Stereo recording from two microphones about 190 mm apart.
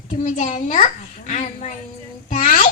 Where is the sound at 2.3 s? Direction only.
45° left (ahead or behind).